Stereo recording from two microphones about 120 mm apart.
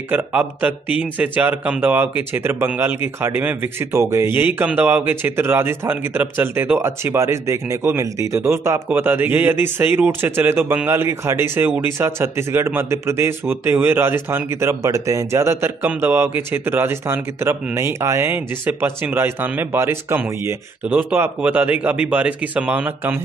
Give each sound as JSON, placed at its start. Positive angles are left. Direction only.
{"t": 0.1, "sound": "speech", "side_deg": -15}